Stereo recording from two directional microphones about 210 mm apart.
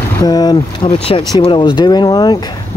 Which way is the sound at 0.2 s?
20° left (ahead or behind).